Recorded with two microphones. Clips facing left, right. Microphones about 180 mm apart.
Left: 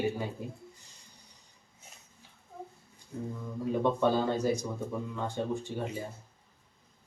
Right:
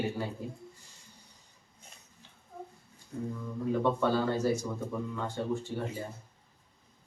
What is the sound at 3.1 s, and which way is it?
Speech, 10° left (ahead or behind).